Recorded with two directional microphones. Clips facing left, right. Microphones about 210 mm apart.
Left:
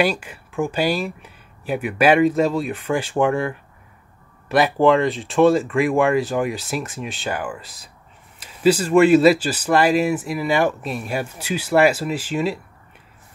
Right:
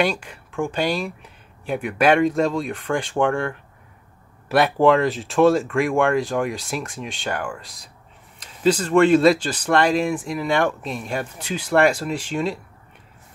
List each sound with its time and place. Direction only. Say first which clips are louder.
0.0 s speech: left 2 dB; 5° left (ahead or behind)